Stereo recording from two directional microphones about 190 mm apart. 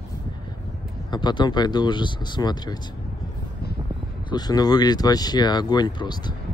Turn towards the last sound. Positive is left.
turn(degrees=25)  # may be behind; listen again after turning